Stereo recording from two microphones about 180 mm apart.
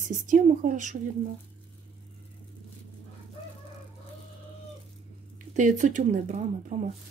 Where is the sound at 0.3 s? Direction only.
45° right (ahead or behind).